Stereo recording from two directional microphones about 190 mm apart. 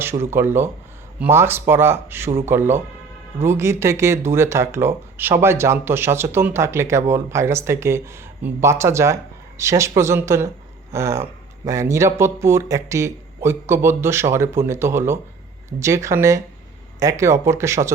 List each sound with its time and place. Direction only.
0.0 s speech: 15° right (ahead or behind)